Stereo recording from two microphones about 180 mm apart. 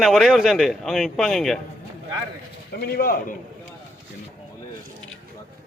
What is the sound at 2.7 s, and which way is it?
Speech, 60° left (ahead or behind).